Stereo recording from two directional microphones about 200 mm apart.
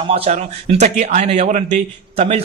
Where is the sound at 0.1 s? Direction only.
30° right (ahead or behind).